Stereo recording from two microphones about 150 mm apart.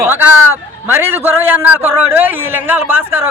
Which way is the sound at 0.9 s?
15° right (ahead or behind).